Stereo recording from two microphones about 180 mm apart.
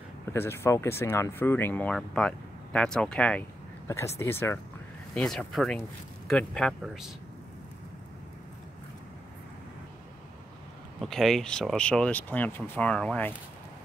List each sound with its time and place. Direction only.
0.3 s speech: 15° left (ahead or behind); by 7.1 s centre (ahead or behind)
11.0 s speech: centre (ahead or behind)